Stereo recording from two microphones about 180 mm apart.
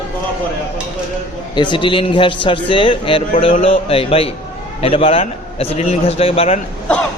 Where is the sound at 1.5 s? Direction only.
25° left (ahead or behind).